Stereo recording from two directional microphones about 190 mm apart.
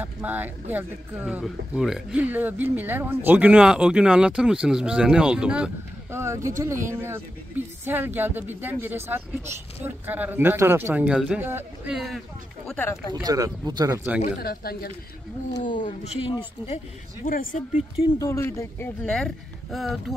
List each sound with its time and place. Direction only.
0.0 s speech: 10° right (ahead or behind)
12.6 s speech: 10° left (ahead or behind)
13.1 s speech: 20° right (ahead or behind)
14.4 s speech: 55° left (ahead or behind)
15.8 s speech: 35° left (ahead or behind)
17.3 s speech: 45° left (ahead or behind)
18.2 s speech: 15° left (ahead or behind)